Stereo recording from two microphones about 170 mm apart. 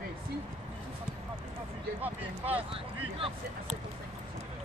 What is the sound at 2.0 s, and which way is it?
Speech, 10° right (ahead or behind).